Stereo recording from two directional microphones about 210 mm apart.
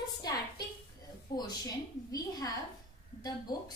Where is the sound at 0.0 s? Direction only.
20° left (ahead or behind).